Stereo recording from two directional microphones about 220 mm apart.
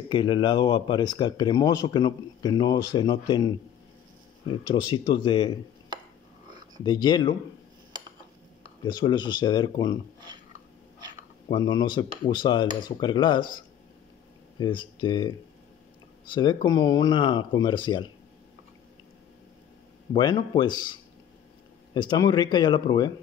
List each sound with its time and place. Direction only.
0.1 s speech: 20° left (ahead or behind)
4.7 s speech: 20° left (ahead or behind)
6.8 s speech: 20° left (ahead or behind)
8.8 s speech: 20° left (ahead or behind)
11.4 s speech: 20° left (ahead or behind)
20.1 s speech: 20° left (ahead or behind)